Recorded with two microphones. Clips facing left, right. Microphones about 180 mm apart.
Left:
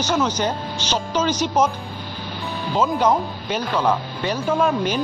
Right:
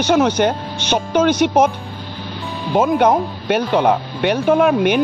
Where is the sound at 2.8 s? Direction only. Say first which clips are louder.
Right 5 dB; 60° right (ahead or behind).